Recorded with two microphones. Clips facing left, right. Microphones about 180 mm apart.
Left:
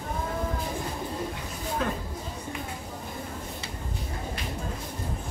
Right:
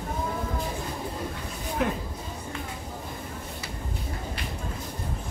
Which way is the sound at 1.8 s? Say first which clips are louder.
Right 4 dB; 15° right (ahead or behind).